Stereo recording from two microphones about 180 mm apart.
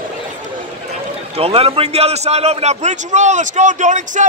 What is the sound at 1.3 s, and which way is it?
A man's voice, 35° right (ahead or behind).